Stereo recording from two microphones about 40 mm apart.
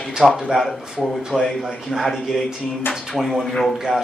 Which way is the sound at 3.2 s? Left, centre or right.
Centre.